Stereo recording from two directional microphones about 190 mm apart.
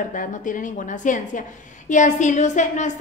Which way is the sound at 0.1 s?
45° left (ahead or behind).